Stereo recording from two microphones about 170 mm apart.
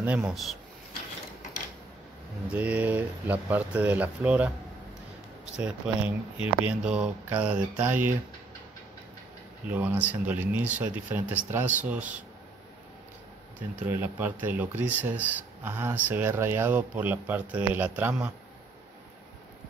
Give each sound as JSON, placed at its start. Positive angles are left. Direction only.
{"t": 0.0, "sound": "speech", "side_deg": -10}
{"t": 2.5, "sound": "speech", "side_deg": -10}
{"t": 5.6, "sound": "speech", "side_deg": -5}
{"t": 6.3, "sound": "speech", "side_deg": 35}
{"t": 6.7, "sound": "speech", "side_deg": -5}
{"t": 9.7, "sound": "speech", "side_deg": -10}
{"t": 13.8, "sound": "speech", "side_deg": -10}